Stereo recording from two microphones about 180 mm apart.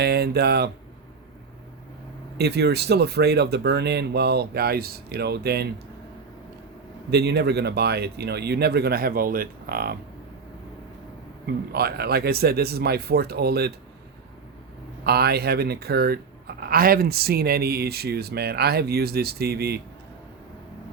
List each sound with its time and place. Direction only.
0.0 s speech: 65° right (ahead or behind)
2.4 s speech: 65° right (ahead or behind)
7.1 s speech: 65° right (ahead or behind)
11.7 s speech: 60° right (ahead or behind)
15.0 s speech: 60° right (ahead or behind)